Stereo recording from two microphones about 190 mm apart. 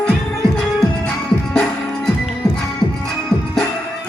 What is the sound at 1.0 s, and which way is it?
Music, 5° left (ahead or behind).